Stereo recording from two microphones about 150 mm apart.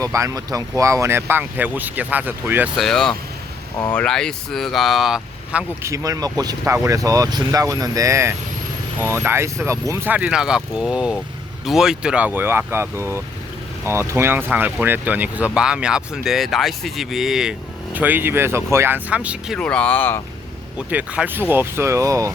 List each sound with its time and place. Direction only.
0.0 s speech: 20° right (ahead or behind)
2.7 s speech: centre (ahead or behind)
5.9 s speech: 25° right (ahead or behind); by 19.5 s 10° right (ahead or behind)
19.5 s speech: 5° left (ahead or behind)
20.7 s speech: 10° right (ahead or behind)